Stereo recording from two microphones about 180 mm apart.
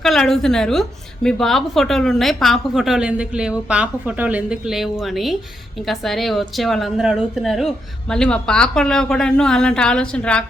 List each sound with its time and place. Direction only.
0.0 s a woman's voice: centre (ahead or behind)